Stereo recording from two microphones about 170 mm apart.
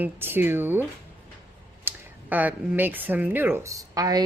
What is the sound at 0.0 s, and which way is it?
Speech, 10° right (ahead or behind).